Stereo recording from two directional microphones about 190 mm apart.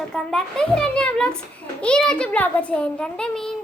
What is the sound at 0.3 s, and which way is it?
A child's voice, 5° left (ahead or behind).